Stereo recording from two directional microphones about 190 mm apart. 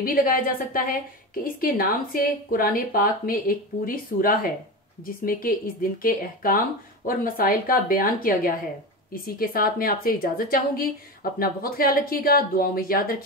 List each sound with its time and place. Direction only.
0.0 s speech: 45° left (ahead or behind)